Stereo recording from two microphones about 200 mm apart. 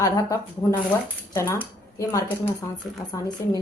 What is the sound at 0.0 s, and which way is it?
A woman's voice, 15° left (ahead or behind).